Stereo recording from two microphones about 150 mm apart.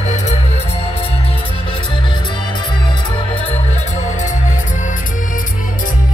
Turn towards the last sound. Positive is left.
turn(degrees=55)  # may be behind; listen again after turning